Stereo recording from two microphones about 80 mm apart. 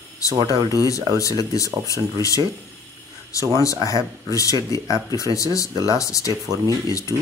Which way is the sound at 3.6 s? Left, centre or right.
Left.